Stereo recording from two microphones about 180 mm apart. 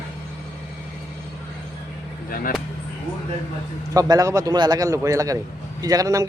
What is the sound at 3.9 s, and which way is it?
A man's voice, 20° right (ahead or behind).